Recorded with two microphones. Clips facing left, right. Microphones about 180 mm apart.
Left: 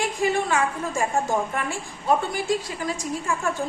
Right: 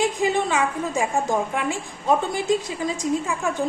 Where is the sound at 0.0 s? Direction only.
20° right (ahead or behind).